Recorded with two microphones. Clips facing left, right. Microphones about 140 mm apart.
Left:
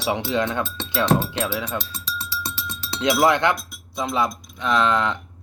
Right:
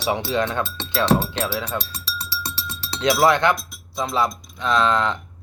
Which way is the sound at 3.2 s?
20° left (ahead or behind).